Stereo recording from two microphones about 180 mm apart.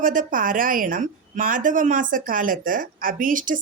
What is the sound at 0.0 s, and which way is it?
A woman's voice, 50° right (ahead or behind).